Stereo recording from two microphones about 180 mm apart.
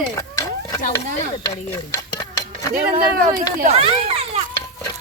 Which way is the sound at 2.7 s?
50° right (ahead or behind).